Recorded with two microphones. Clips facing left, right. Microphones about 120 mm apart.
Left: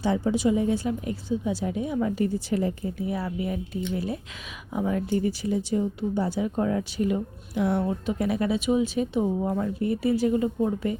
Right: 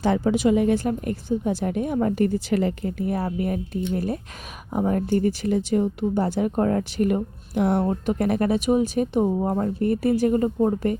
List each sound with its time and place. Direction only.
0.0 s speech: 75° right (ahead or behind); by 10.9 s 45° right (ahead or behind)